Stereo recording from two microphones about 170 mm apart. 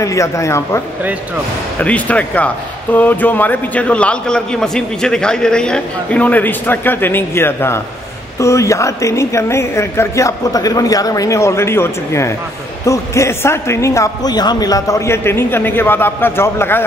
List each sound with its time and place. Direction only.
0.0 s speech: 20° left (ahead or behind)